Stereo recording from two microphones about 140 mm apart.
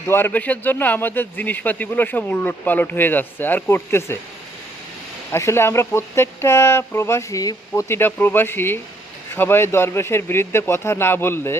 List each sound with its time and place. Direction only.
0.1 s a man's voice: 15° left (ahead or behind)
5.3 s a man's voice: 20° left (ahead or behind)